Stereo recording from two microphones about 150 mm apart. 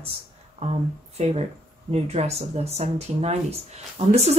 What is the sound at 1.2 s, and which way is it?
Speech, 45° right (ahead or behind).